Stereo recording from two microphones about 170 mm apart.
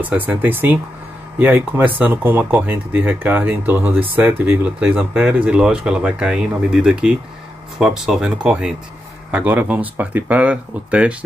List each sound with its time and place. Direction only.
0.0 s speech: 10° right (ahead or behind)